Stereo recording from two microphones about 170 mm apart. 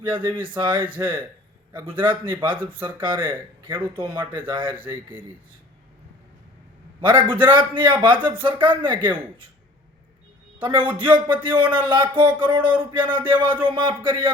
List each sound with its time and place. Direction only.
0.0 s a man's voice: 30° right (ahead or behind)
0.9 s speech: 15° right (ahead or behind)
1.8 s a man's voice: 30° right (ahead or behind)
7.0 s a man's voice: 30° right (ahead or behind)
10.6 s a man's voice: 30° right (ahead or behind)